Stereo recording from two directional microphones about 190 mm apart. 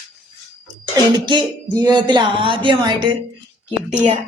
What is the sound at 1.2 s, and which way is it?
Speech, 20° right (ahead or behind).